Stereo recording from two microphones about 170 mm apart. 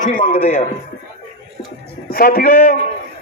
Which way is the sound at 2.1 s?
60° left (ahead or behind).